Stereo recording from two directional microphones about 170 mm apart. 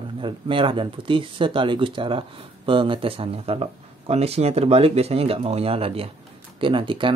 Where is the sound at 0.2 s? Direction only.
30° right (ahead or behind).